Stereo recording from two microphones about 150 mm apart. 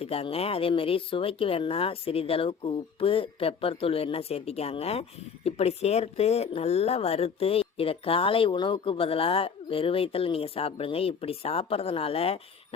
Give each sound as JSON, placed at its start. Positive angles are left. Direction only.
{"t": 0.0, "sound": "speech", "side_deg": 40}